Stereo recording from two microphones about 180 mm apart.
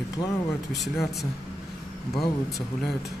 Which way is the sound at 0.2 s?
30° left (ahead or behind).